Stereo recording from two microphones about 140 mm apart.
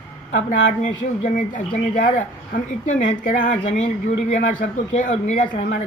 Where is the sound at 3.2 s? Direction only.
65° left (ahead or behind).